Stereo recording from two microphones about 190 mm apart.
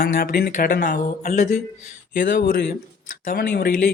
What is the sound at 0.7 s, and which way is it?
Speech, 60° left (ahead or behind).